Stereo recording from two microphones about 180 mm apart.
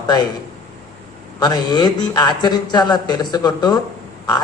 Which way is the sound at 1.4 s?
20° left (ahead or behind).